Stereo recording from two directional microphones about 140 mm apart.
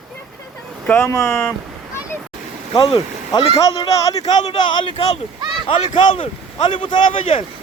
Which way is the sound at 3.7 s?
25° left (ahead or behind).